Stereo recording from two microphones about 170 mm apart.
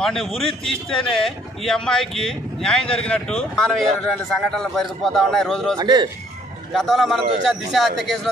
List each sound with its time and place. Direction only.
0.0 s speech: centre (ahead or behind)
5.8 s a man's voice: 25° right (ahead or behind)
6.7 s speech: centre (ahead or behind)